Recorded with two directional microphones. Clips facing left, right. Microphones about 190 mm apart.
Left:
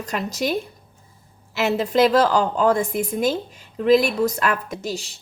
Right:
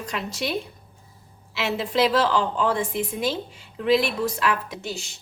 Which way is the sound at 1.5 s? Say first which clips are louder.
Left 5 dB; 40° left (ahead or behind).